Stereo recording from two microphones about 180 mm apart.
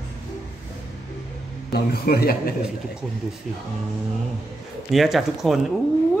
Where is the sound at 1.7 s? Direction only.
60° left (ahead or behind).